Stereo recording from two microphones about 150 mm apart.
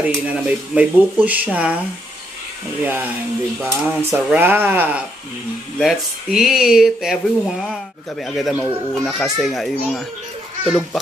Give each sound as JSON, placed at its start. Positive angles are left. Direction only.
{"t": 0.0, "sound": "speech", "side_deg": -10}
{"t": 2.8, "sound": "speech", "side_deg": -10}
{"t": 5.8, "sound": "a child's voice", "side_deg": 0}